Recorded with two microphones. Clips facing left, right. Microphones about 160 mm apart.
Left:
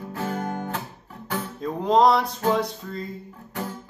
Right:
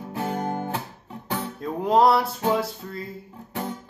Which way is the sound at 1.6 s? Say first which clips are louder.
Left 1 dB; 5° right (ahead or behind).